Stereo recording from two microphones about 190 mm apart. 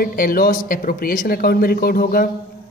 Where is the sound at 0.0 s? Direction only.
50° left (ahead or behind).